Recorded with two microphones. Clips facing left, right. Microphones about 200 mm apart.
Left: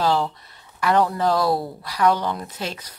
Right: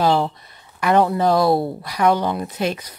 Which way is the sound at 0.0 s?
15° right (ahead or behind).